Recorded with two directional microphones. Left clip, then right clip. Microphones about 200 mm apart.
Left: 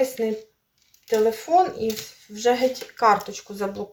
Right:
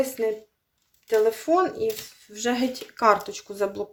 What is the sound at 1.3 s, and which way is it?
Speech, 50° right (ahead or behind).